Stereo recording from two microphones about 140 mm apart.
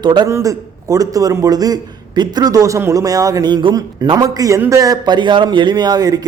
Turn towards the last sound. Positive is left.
turn(degrees=-30)  # may be behind; listen again after turning